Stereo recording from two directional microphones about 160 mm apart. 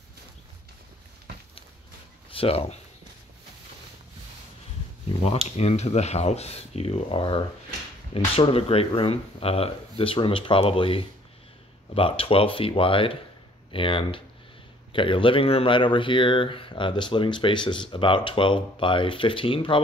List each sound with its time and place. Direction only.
2.3 s speech: 35° left (ahead or behind)
5.2 s speech: 40° left (ahead or behind)